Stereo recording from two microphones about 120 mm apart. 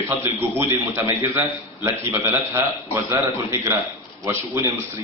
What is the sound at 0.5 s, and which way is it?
A man's voice, 20° right (ahead or behind).